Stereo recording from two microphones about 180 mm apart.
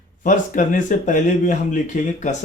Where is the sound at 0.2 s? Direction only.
45° left (ahead or behind).